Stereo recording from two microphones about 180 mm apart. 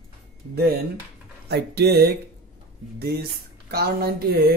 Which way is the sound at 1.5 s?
65° right (ahead or behind).